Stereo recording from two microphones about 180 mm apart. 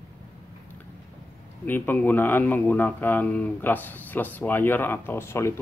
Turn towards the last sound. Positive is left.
turn(degrees=15)  # may be behind; listen again after turning